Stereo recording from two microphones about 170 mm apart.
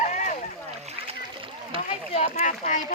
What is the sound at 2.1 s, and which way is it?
Speech, 45° left (ahead or behind).